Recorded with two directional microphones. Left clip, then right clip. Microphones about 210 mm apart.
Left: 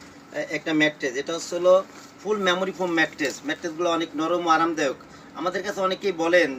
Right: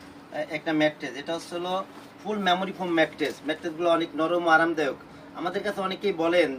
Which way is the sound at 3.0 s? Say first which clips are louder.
Left 1 dB; 15° right (ahead or behind).